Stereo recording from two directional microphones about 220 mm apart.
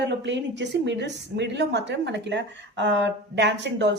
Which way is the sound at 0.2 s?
55° right (ahead or behind).